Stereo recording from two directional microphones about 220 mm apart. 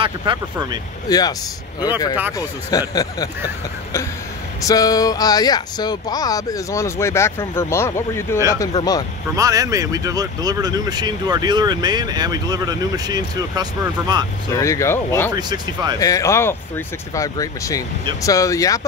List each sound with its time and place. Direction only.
0.0 s speech: 20° right (ahead or behind)
1.0 s speech: 15° left (ahead or behind)
2.3 s speech: 15° left (ahead or behind)
4.6 s speech: 15° left (ahead or behind)
9.3 s speech: 15° right (ahead or behind)
14.5 s speech: 15° left (ahead or behind)
15.3 s speech: 20° right (ahead or behind)
16.0 s speech: 15° left (ahead or behind)